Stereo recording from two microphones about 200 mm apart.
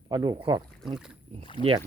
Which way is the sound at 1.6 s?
25° left (ahead or behind).